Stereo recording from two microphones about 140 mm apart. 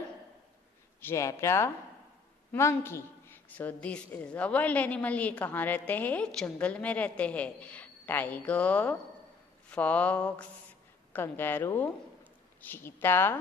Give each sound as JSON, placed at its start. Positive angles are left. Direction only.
{"t": 1.0, "sound": "a woman's voice", "side_deg": 20}